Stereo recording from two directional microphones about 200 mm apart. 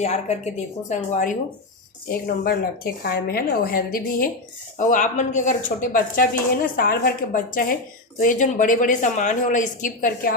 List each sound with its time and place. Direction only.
0.0 s a woman's voice: 35° left (ahead or behind)
8.2 s a woman's voice: 40° left (ahead or behind)